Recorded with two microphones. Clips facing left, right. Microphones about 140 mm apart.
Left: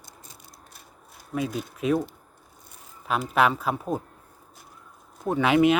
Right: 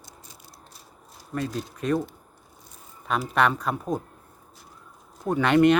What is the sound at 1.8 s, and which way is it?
Speech, 5° left (ahead or behind).